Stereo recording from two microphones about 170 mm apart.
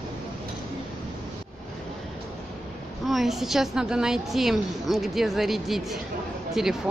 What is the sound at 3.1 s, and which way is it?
A woman's voice, centre (ahead or behind).